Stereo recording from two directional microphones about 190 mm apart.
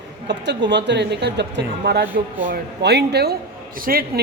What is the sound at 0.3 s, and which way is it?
A man's voice, 65° right (ahead or behind).